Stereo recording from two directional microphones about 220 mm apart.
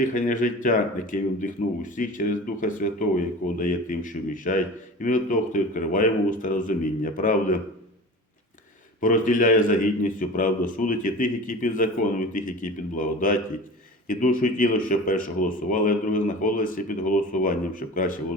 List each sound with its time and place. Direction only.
0.0 s a man's voice: 35° left (ahead or behind)
9.0 s a man's voice: 35° left (ahead or behind)